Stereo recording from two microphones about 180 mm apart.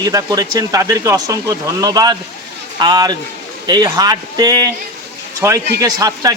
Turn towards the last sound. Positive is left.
turn(degrees=-20)  # may be behind; listen again after turning